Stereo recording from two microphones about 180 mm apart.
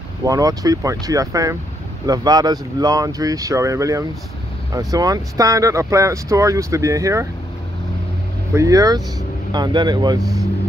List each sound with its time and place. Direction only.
0.2 s speech: 20° right (ahead or behind)
8.5 s speech: 20° right (ahead or behind)